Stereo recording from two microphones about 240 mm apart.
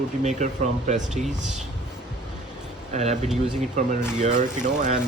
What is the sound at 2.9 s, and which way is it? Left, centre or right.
Speech, right.